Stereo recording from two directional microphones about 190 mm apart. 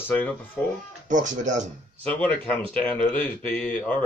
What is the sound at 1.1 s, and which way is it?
Speech, 40° right (ahead or behind).